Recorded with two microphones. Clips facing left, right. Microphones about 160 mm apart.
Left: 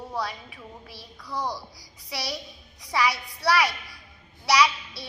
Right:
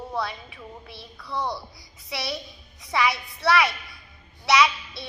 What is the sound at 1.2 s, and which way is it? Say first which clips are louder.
Speech: right 1 dB; 10° left (ahead or behind).